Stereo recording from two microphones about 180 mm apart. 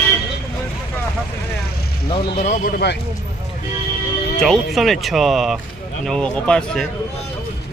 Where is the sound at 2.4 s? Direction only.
45° left (ahead or behind).